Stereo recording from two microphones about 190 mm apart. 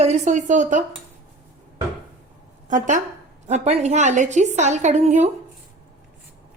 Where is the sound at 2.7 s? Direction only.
40° right (ahead or behind).